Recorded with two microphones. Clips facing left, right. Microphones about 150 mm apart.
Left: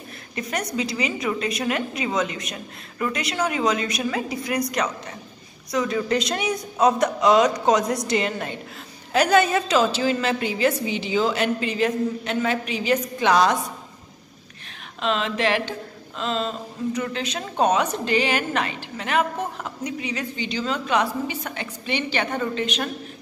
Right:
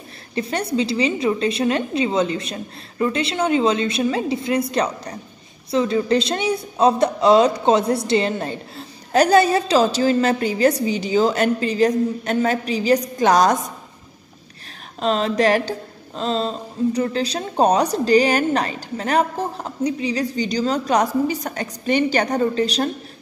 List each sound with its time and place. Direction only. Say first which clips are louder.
0.3 s a woman's voice: right 5 dB; 30° right (ahead or behind)
15.0 s a woman's voice: right 5 dB; 40° right (ahead or behind)